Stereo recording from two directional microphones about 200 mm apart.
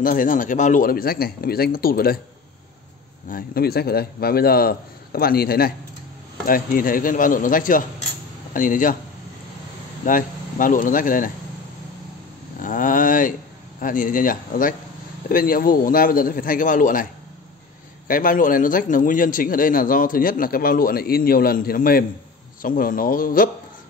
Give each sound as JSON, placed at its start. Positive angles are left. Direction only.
{"t": 0.0, "sound": "a man's voice", "side_deg": 45}
{"t": 3.3, "sound": "a man's voice", "side_deg": 45}
{"t": 10.0, "sound": "a man's voice", "side_deg": 40}
{"t": 12.5, "sound": "a sound", "side_deg": 40}
{"t": 13.7, "sound": "a man's voice", "side_deg": 40}